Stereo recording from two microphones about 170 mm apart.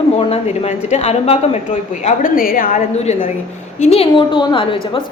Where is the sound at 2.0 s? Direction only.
55° left (ahead or behind).